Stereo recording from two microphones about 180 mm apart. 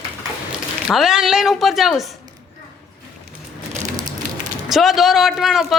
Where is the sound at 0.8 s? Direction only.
Centre (ahead or behind).